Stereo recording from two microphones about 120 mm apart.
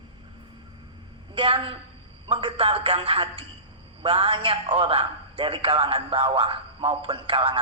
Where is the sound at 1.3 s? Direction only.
45° right (ahead or behind).